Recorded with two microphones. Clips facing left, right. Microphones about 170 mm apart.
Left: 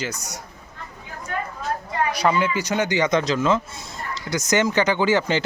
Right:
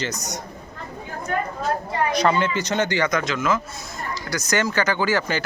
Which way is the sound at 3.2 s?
35° left (ahead or behind).